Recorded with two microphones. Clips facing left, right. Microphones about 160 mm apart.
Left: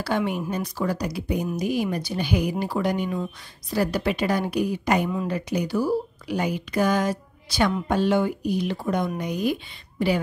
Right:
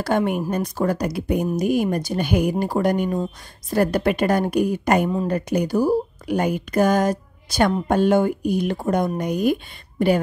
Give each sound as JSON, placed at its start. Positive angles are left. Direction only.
{"t": 0.0, "sound": "speech", "side_deg": -50}